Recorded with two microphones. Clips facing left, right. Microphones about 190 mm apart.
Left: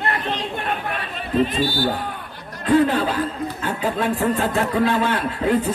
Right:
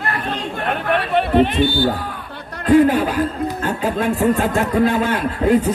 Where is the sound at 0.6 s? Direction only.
65° right (ahead or behind).